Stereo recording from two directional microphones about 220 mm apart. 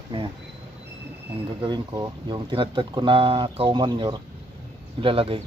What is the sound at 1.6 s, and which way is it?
Speech, 20° right (ahead or behind).